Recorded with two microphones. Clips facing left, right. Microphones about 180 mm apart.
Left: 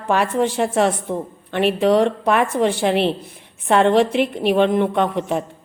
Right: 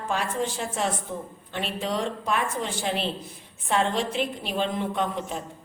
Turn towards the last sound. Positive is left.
turn(degrees=65)  # may be behind; listen again after turning